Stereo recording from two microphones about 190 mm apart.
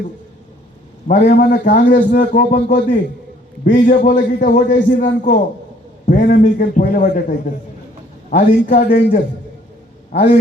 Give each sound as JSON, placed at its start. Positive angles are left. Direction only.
{"t": 1.0, "sound": "a man's voice", "side_deg": 40}
{"t": 1.3, "sound": "a man's voice", "side_deg": 50}